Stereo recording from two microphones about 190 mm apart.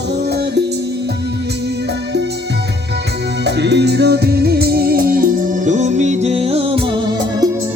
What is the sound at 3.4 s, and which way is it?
Music, 65° right (ahead or behind).